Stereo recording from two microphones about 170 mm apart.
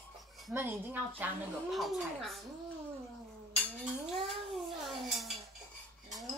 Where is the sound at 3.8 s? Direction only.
Centre (ahead or behind).